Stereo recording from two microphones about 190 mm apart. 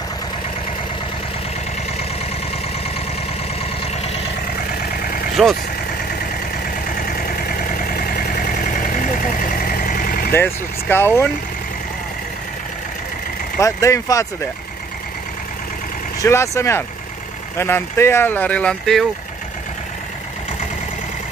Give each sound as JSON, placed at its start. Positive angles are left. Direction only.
{"t": 5.4, "sound": "speech", "side_deg": 0}
{"t": 7.0, "sound": "vehicle", "side_deg": 50}
{"t": 10.3, "sound": "speech", "side_deg": 10}
{"t": 13.6, "sound": "speech", "side_deg": 15}
{"t": 16.2, "sound": "speech", "side_deg": 15}